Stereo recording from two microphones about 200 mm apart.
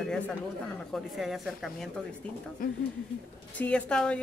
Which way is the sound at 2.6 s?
45° left (ahead or behind).